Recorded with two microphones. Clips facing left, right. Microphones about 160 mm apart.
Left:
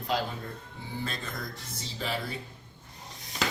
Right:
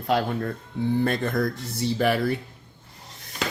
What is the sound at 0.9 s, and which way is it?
Speech, 55° right (ahead or behind).